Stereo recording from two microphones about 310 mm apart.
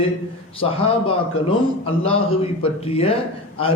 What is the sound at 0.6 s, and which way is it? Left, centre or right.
A man's voice, centre.